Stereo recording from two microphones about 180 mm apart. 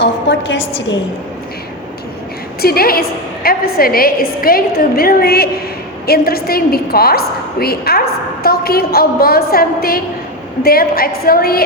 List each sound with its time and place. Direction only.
0.0 s a woman's voice: 80° left
2.6 s a woman's voice: 55° left (ahead or behind)